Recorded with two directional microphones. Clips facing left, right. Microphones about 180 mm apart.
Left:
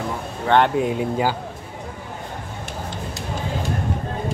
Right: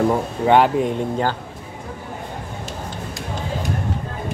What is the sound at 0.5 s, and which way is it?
Speech, 5° right (ahead or behind).